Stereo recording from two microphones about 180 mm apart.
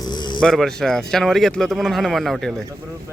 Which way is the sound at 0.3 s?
5° left (ahead or behind).